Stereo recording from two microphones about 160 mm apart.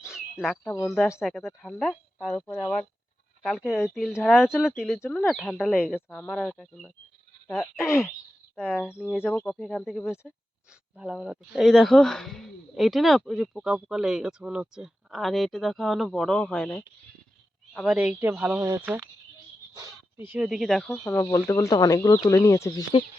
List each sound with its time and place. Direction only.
0.1 s a sound: 5° right (ahead or behind)
0.9 s speech: centre (ahead or behind)
7.4 s speech: 15° left (ahead or behind)
8.9 s speech: 5° right (ahead or behind)
9.2 s speech: 10° left (ahead or behind)
17.7 s speech: 5° right (ahead or behind); by 21.2 s 10° left (ahead or behind)
21.2 s speech: 20° left (ahead or behind)